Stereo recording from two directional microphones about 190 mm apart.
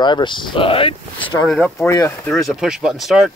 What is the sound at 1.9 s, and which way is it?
Speech, 15° left (ahead or behind).